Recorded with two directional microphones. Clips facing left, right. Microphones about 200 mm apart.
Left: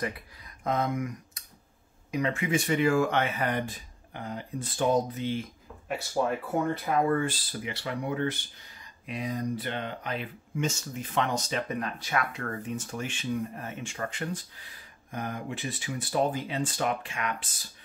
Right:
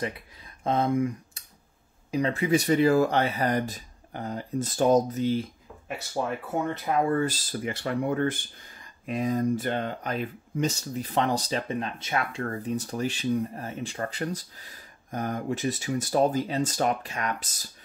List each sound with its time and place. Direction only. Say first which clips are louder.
0.7 s speech: right 4 dB; 30° right (ahead or behind)
6.7 s speech: right 2 dB; 30° right (ahead or behind)